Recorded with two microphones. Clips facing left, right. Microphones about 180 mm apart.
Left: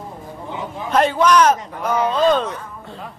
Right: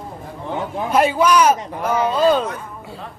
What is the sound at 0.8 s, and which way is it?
Speech, 10° right (ahead or behind).